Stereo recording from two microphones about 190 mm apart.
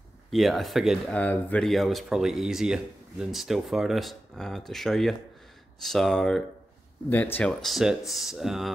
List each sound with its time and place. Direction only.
0.3 s speech: centre (ahead or behind)